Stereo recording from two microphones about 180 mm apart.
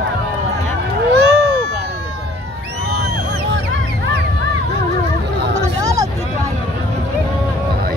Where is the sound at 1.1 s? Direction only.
65° right (ahead or behind).